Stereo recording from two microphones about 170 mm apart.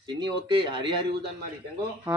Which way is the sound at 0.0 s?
30° right (ahead or behind).